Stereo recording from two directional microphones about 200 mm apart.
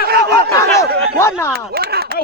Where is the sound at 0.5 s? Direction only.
15° left (ahead or behind).